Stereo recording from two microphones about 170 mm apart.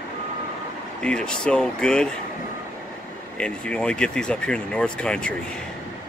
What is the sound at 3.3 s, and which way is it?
Speech, 5° left (ahead or behind).